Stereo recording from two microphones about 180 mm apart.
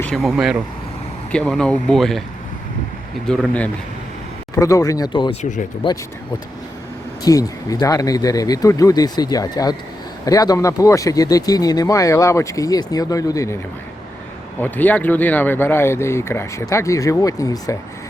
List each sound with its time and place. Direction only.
0.0 s speech: centre (ahead or behind)
3.2 s speech: 10° left (ahead or behind); by 5.4 s 25° left (ahead or behind)
5.4 s speech: 45° left (ahead or behind)
7.3 s speech: 20° left (ahead or behind)
14.6 s speech: 10° left (ahead or behind)